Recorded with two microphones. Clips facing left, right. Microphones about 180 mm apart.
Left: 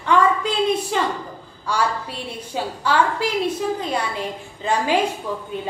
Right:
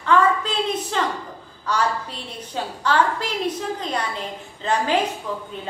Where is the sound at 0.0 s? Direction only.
15° left (ahead or behind).